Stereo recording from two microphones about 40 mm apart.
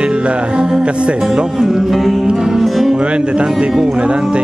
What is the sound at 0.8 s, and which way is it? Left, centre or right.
Speech, right.